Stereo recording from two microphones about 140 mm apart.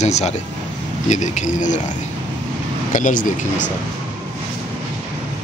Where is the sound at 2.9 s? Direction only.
65° left (ahead or behind).